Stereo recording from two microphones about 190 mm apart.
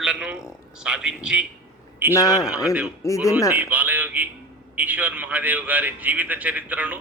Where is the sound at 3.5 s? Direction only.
10° right (ahead or behind).